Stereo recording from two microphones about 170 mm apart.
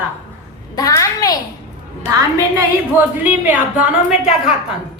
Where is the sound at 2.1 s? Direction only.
20° right (ahead or behind).